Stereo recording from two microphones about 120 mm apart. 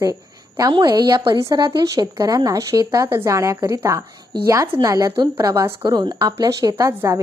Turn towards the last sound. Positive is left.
turn(degrees=-25)  # may be behind; listen again after turning